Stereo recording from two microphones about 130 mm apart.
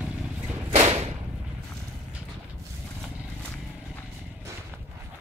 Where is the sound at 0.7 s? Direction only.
55° right (ahead or behind).